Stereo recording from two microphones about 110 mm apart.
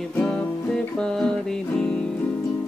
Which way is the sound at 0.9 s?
5° left (ahead or behind).